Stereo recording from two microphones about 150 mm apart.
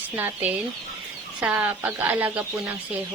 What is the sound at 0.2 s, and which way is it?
A woman's voice, 10° right (ahead or behind).